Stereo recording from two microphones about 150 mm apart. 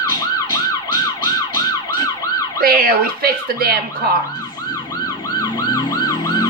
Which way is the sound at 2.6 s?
85° right.